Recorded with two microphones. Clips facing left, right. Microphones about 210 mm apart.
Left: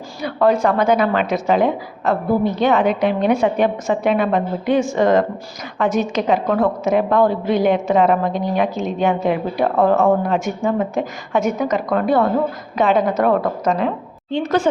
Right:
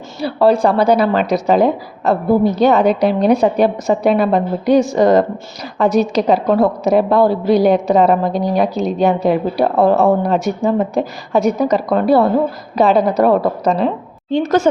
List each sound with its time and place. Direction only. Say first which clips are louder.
0.2 s a woman's voice: right 3 dB; 30° right (ahead or behind)